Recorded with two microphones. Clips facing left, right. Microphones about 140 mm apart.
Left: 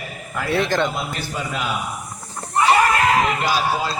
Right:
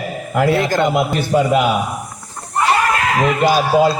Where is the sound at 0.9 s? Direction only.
65° right (ahead or behind).